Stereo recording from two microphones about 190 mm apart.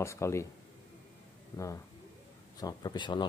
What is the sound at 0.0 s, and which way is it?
Speech, 15° left (ahead or behind).